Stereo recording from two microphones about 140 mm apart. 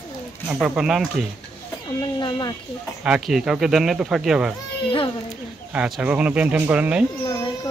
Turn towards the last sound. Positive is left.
turn(degrees=-10)  # may be behind; listen again after turning